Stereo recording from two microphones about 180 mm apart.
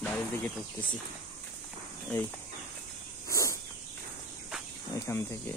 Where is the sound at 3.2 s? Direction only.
15° left (ahead or behind).